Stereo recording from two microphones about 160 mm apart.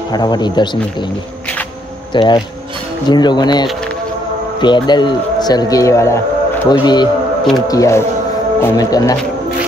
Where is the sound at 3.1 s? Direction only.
25° left (ahead or behind).